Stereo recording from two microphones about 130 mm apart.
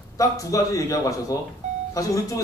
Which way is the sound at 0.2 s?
25° left (ahead or behind).